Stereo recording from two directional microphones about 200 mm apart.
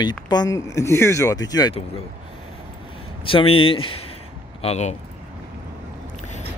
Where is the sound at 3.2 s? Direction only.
25° left (ahead or behind).